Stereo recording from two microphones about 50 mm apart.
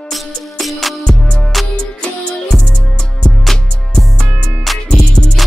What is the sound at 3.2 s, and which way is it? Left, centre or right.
Music, centre.